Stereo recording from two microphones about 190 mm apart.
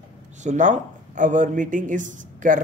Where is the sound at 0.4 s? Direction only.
40° right (ahead or behind).